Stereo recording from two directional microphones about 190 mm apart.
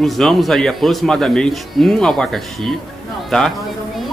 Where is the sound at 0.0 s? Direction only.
Centre (ahead or behind).